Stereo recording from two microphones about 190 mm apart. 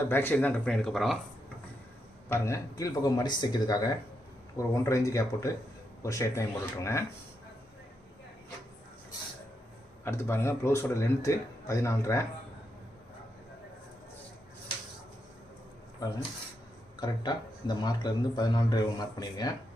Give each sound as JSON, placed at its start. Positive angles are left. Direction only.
{"t": 0.1, "sound": "speech", "side_deg": 10}
{"t": 2.3, "sound": "speech", "side_deg": 15}
{"t": 10.0, "sound": "speech", "side_deg": 15}
{"t": 16.0, "sound": "speech", "side_deg": 20}